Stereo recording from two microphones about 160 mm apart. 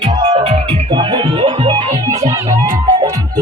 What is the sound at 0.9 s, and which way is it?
Music, 30° right (ahead or behind).